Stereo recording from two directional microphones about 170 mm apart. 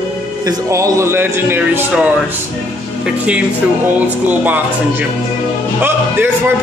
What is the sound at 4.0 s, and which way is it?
Speech, 10° right (ahead or behind).